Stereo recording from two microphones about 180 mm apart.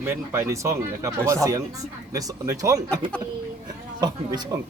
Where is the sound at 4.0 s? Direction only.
25° right (ahead or behind).